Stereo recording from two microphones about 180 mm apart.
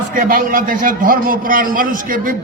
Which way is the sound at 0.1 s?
50° right (ahead or behind).